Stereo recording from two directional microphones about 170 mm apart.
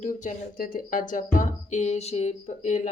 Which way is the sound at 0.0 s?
45° left (ahead or behind).